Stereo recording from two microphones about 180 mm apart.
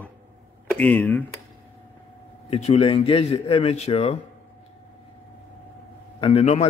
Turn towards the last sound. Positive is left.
turn(degrees=35)  # may be behind; listen again after turning